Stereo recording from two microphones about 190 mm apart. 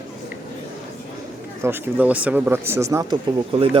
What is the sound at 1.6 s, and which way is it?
Speech, 10° right (ahead or behind).